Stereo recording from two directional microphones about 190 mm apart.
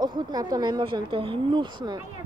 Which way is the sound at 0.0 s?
20° right (ahead or behind).